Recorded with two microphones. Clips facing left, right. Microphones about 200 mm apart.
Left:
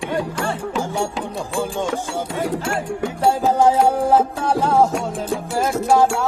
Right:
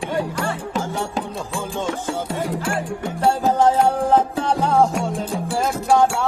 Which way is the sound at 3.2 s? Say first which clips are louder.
Left 1 dB; 10° left (ahead or behind).